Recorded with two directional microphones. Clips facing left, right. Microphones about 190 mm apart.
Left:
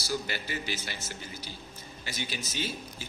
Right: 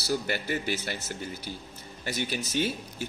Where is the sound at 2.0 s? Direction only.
55° right (ahead or behind).